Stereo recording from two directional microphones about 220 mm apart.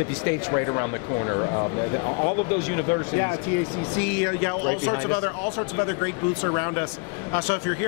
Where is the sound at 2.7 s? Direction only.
15° left (ahead or behind).